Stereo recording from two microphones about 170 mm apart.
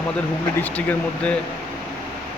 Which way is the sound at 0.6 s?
10° left (ahead or behind).